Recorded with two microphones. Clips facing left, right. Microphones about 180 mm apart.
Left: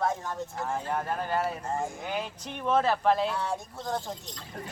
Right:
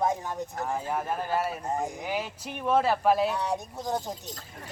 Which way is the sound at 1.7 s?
15° right (ahead or behind).